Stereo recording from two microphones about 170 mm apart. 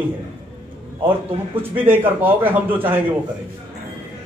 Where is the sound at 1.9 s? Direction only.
10° right (ahead or behind).